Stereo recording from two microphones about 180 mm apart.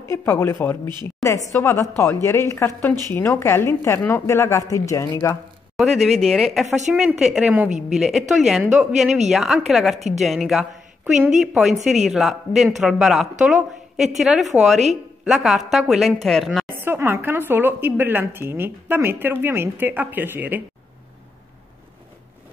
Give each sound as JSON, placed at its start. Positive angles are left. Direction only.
{"t": 0.1, "sound": "a woman's voice", "side_deg": 15}
{"t": 5.9, "sound": "a woman's voice", "side_deg": 0}
{"t": 16.6, "sound": "a woman's voice", "side_deg": -10}